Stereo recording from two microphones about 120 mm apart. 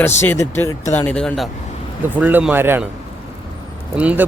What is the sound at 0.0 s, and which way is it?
Speech, 20° left (ahead or behind).